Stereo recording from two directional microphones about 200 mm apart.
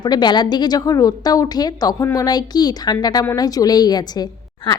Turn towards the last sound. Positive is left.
turn(degrees=20)  # may be behind; listen again after turning